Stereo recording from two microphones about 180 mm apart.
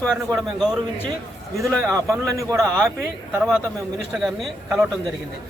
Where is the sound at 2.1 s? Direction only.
15° right (ahead or behind).